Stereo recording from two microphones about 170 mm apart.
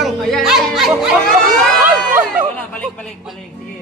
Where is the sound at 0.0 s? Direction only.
Centre (ahead or behind).